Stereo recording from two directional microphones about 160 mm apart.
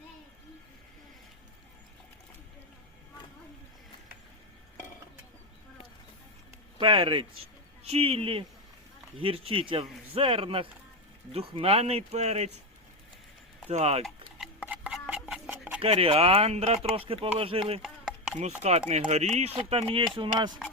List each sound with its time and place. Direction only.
6.7 s speech: 35° right (ahead or behind)
13.7 s speech: 40° right (ahead or behind)
14.3 s a sound: 5° right (ahead or behind)
15.8 s speech: 35° right (ahead or behind)
18.3 s chopping: 45° right (ahead or behind)
19.5 s speech: 35° right (ahead or behind)